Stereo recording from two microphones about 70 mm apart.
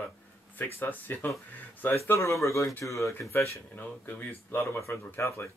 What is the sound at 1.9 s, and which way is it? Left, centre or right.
Speech, left.